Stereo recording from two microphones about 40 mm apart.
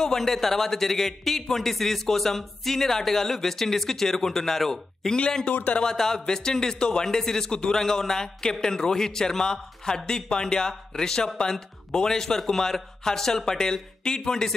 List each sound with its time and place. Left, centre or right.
0.0 s a man's voice: centre
5.5 s speech: left
5.9 s a man's voice: centre